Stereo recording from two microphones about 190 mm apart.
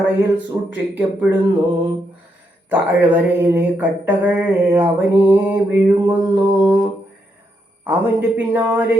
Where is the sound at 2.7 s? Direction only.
10° right (ahead or behind).